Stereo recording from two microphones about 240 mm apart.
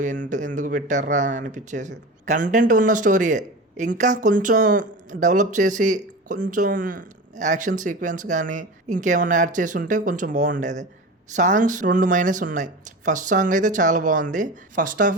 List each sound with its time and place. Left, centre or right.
0.0 s speech: right